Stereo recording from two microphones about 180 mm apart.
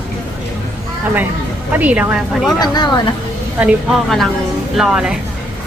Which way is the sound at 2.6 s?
25° left (ahead or behind).